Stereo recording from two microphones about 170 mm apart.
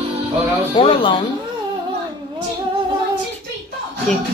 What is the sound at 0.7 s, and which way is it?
Speech, 30° left (ahead or behind).